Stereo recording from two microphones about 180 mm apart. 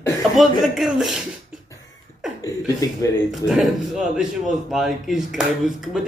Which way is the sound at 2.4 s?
20° left (ahead or behind).